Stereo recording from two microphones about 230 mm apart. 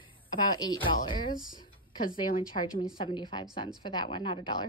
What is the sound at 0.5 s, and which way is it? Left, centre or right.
Speech, centre.